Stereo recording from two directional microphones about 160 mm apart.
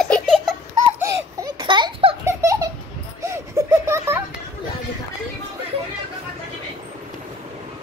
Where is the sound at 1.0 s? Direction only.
25° right (ahead or behind).